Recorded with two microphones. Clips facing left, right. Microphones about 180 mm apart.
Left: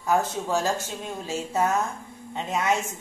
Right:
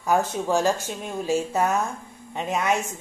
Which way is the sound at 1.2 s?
15° right (ahead or behind).